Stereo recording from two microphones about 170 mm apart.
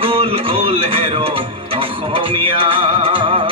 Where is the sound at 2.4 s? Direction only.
30° right (ahead or behind).